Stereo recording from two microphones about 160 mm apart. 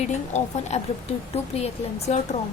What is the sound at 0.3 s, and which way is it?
A woman's voice, 45° left (ahead or behind).